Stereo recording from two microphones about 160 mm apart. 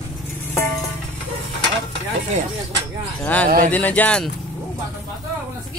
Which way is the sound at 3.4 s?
55° right (ahead or behind).